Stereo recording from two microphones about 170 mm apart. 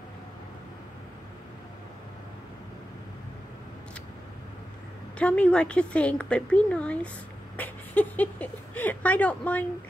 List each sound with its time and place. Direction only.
5.2 s speech: 5° left (ahead or behind)